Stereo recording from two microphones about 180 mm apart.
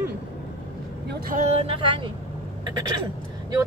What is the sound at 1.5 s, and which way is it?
Speech, 30° right (ahead or behind).